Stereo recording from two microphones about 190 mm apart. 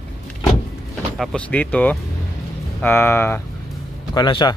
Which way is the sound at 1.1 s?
5° left (ahead or behind).